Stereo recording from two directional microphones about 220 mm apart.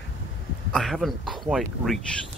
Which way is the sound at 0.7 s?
Centre (ahead or behind).